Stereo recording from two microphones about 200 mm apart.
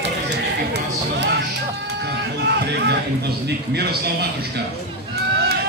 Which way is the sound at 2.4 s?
55° right (ahead or behind).